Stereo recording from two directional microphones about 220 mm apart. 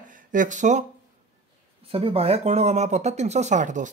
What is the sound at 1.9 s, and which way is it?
Speech, 25° right (ahead or behind).